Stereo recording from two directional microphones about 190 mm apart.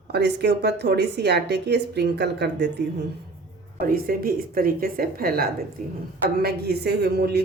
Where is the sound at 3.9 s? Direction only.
50° right (ahead or behind).